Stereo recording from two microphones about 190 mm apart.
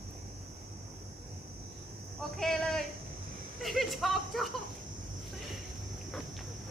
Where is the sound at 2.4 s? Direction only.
Centre (ahead or behind).